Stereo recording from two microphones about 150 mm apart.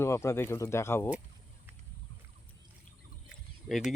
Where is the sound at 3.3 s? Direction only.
Centre (ahead or behind).